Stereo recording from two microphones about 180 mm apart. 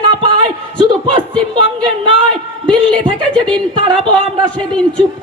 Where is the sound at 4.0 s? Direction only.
25° right (ahead or behind).